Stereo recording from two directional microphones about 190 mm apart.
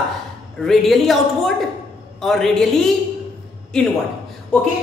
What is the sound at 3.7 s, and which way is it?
Speech, 5° left (ahead or behind).